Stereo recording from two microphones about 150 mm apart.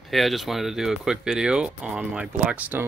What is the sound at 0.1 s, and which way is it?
Speech, centre (ahead or behind).